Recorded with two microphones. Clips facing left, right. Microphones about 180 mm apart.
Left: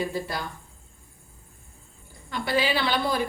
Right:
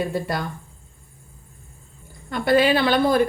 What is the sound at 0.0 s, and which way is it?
Speech, 60° right (ahead or behind).